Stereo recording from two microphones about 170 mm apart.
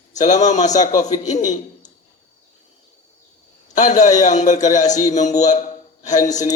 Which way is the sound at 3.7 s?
45° left (ahead or behind).